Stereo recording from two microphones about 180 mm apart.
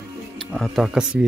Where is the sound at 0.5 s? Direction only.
Centre (ahead or behind).